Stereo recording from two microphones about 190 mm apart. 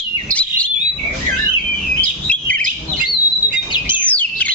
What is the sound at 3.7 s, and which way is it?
Bird, 25° left (ahead or behind).